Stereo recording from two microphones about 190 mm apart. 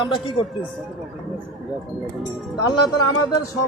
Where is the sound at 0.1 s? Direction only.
25° left (ahead or behind).